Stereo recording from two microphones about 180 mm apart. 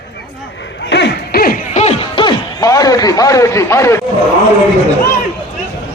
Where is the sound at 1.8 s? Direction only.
30° left (ahead or behind); by 4.0 s 15° left (ahead or behind).